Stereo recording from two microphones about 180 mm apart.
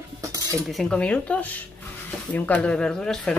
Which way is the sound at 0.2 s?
20° right (ahead or behind).